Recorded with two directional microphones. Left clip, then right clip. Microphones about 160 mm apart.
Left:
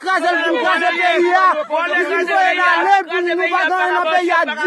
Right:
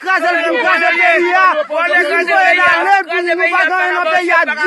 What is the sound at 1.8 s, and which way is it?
Speech, 45° left (ahead or behind).